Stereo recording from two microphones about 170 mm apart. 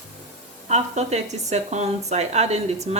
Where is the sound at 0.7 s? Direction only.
40° right (ahead or behind).